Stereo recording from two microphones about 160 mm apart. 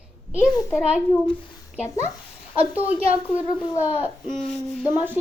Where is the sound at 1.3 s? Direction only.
35° left (ahead or behind).